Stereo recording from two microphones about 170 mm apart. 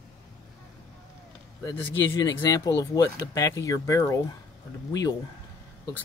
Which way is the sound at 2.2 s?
20° left (ahead or behind).